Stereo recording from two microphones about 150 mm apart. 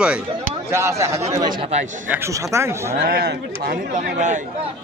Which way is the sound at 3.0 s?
85° right.